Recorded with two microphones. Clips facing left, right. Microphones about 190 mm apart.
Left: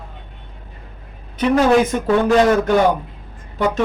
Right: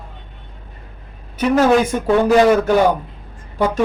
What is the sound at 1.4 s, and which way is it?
A woman's voice, 5° right (ahead or behind).